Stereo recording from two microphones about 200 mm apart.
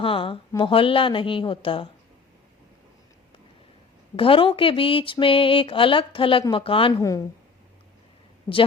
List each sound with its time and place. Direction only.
0.0 s speech: 25° left (ahead or behind)
4.2 s speech: 25° left (ahead or behind)
7.0 s a woman's voice: 15° left (ahead or behind)